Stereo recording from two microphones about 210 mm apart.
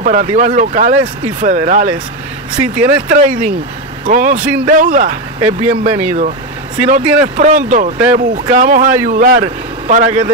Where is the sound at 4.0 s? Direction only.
40° right (ahead or behind).